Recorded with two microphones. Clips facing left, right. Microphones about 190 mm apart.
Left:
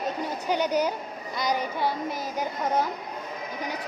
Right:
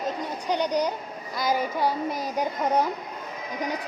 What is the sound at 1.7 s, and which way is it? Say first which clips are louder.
Child singing: right 2 dB; 40° right (ahead or behind).